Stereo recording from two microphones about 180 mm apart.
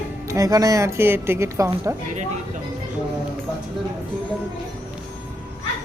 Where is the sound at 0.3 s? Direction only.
20° right (ahead or behind).